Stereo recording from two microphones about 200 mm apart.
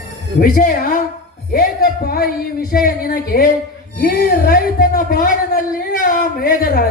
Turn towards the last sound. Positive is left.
turn(degrees=45)  # may be behind; listen again after turning